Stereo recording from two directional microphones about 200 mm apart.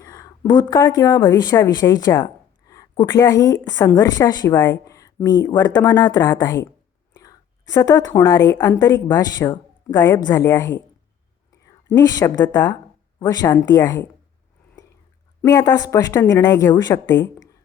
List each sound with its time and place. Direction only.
0.0 s speech: 20° left (ahead or behind)
7.7 s speech: 15° left (ahead or behind)
11.9 s speech: 15° left (ahead or behind)
15.4 s speech: 15° left (ahead or behind)